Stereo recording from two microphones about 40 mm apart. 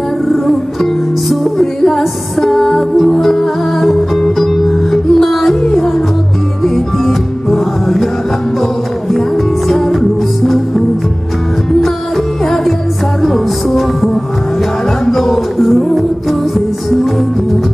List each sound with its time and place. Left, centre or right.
1.3 s music: centre
6.6 s music: centre
9.7 s music: centre
13.2 s music: centre